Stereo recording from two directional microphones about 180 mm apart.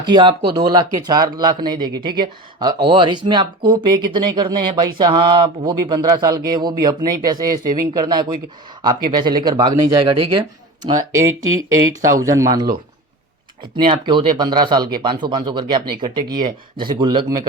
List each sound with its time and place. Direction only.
0.0 s speech: 25° right (ahead or behind)
11.3 s speech: 90° right
12.2 s speech: 15° right (ahead or behind)
13.7 s speech: 25° right (ahead or behind)